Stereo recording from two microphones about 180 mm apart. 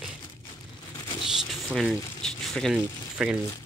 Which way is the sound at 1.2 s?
Centre (ahead or behind).